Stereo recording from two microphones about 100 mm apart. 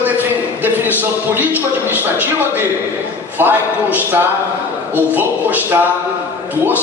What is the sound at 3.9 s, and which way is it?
A man's voice, 20° right (ahead or behind).